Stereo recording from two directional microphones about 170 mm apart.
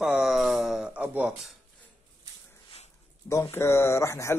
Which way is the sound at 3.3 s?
15° left (ahead or behind).